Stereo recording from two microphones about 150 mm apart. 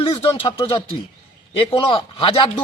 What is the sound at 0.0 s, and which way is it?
Speech, 40° left (ahead or behind).